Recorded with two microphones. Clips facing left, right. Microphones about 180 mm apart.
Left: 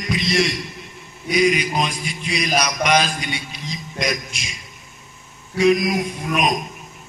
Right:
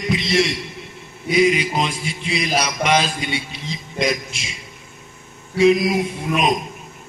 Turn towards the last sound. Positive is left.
turn(degrees=-25)  # may be behind; listen again after turning